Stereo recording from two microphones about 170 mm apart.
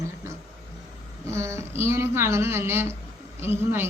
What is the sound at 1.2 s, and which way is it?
A woman's voice, 15° right (ahead or behind).